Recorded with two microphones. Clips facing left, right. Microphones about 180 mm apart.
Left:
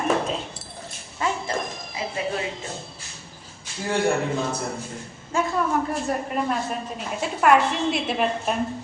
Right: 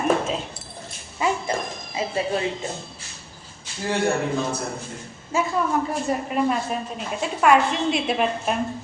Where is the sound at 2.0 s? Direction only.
25° right (ahead or behind).